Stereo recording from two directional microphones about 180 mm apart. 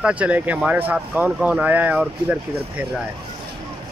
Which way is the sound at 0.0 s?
5° right (ahead or behind).